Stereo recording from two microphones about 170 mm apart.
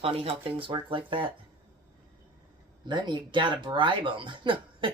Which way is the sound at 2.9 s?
25° right (ahead or behind).